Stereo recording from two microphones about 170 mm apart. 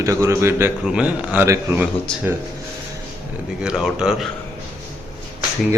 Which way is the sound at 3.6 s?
5° right (ahead or behind).